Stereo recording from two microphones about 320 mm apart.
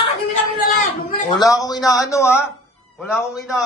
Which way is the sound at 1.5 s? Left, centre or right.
Centre.